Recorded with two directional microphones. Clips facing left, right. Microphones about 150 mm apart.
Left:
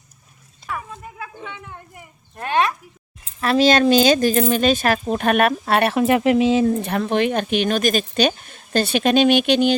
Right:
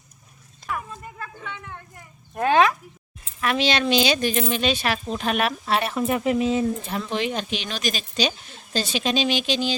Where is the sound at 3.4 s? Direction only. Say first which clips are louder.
Left 7 dB; 40° left (ahead or behind).